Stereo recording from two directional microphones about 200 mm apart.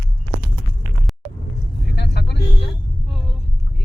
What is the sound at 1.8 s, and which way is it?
Vehicle, 55° left (ahead or behind).